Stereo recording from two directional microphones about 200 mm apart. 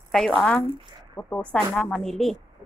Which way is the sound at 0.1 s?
Centre (ahead or behind).